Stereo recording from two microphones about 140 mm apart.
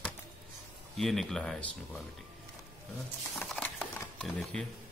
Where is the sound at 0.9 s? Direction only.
Centre (ahead or behind).